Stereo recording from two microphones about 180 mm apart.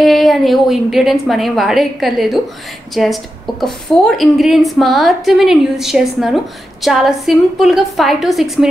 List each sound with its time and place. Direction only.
0.0 s a woman's voice: centre (ahead or behind)